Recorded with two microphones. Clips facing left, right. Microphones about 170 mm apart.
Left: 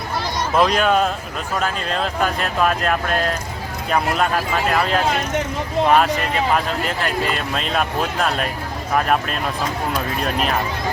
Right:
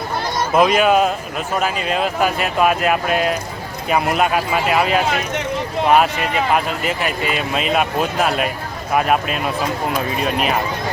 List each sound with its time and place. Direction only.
0.5 s speech: 5° right (ahead or behind)